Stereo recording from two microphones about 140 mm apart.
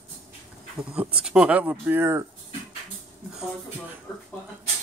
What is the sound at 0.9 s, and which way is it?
Speech, 5° right (ahead or behind).